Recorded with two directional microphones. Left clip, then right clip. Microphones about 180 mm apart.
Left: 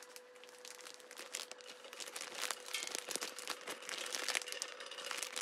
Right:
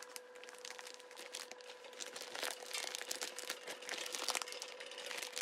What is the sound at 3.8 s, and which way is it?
Crumpling, 5° left (ahead or behind).